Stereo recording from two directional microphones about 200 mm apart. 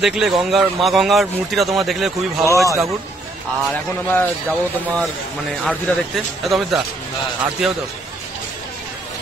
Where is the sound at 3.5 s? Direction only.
5° left (ahead or behind).